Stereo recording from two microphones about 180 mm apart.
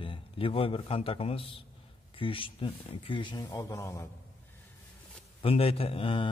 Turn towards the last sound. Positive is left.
turn(degrees=30)  # may be behind; listen again after turning